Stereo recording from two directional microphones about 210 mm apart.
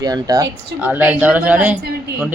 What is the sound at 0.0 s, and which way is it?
Speech, 15° right (ahead or behind).